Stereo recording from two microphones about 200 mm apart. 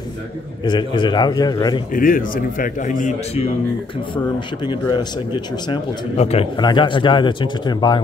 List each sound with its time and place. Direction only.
0.7 s a man's voice: 20° left (ahead or behind)
2.0 s speech: 45° left (ahead or behind)
4.6 s a man's voice: 20° left (ahead or behind)